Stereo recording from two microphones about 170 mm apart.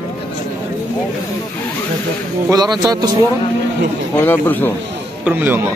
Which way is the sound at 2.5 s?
20° right (ahead or behind).